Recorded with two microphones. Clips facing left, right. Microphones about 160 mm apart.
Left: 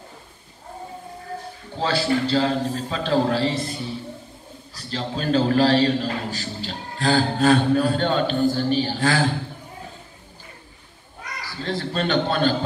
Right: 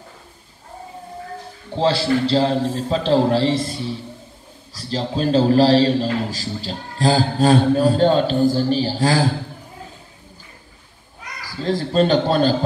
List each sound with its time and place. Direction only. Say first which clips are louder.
1.8 s a man's voice: right 4 dB; 35° right (ahead or behind)
11.6 s a man's voice: right 7 dB; 40° right (ahead or behind)